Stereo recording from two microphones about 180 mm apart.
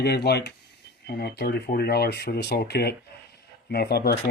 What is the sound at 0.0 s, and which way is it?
Speech, 65° left (ahead or behind).